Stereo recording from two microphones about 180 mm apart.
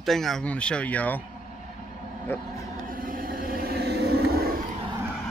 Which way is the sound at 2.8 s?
50° right (ahead or behind).